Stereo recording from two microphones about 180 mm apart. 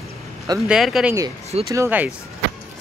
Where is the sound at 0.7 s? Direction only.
Centre (ahead or behind).